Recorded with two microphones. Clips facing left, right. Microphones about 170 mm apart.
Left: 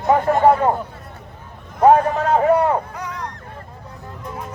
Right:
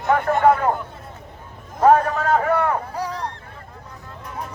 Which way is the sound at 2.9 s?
30° right (ahead or behind).